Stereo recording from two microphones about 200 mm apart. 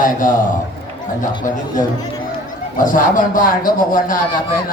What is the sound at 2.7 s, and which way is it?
Speech, 40° left (ahead or behind).